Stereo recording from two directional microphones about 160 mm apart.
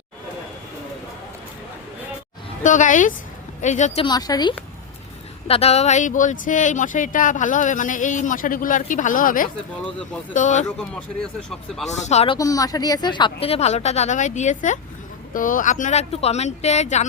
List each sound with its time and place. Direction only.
2.6 s speech: 55° left (ahead or behind)
4.0 s a woman's voice: 25° left (ahead or behind)
5.5 s speech: 40° left (ahead or behind)
11.9 s speech: 45° left (ahead or behind)
12.4 s a woman's voice: 20° left (ahead or behind); by 17.1 s 45° left (ahead or behind)